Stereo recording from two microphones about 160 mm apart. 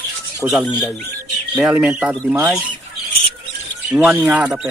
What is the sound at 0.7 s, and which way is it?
Speech, 10° left (ahead or behind).